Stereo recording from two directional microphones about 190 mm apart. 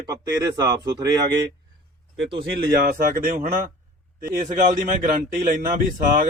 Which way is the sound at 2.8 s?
50° right (ahead or behind).